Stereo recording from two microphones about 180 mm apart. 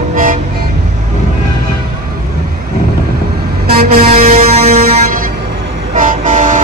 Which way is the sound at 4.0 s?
35° right (ahead or behind).